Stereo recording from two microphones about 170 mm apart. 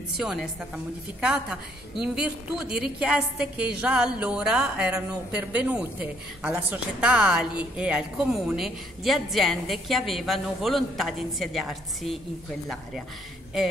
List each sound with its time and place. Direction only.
0.2 s a woman's voice: centre (ahead or behind)